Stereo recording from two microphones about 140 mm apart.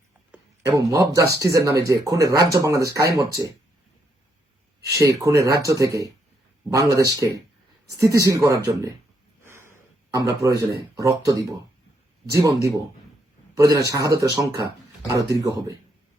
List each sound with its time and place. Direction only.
0.6 s speech: 20° right (ahead or behind)
4.8 s speech: 25° right (ahead or behind)